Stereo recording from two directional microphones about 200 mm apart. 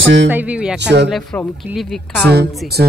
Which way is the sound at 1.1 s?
5° left (ahead or behind).